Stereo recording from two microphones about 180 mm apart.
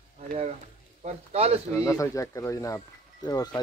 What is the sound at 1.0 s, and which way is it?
Speech, 35° right (ahead or behind).